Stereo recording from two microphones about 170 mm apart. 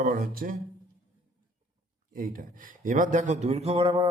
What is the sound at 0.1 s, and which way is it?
Speech, 55° right (ahead or behind).